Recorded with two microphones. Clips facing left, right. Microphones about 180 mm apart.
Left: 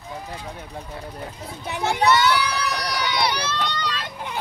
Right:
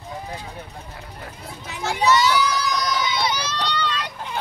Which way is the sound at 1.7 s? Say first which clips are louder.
Left 1 dB; 60° left (ahead or behind).